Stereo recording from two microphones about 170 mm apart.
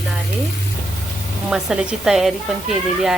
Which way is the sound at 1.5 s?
5° right (ahead or behind).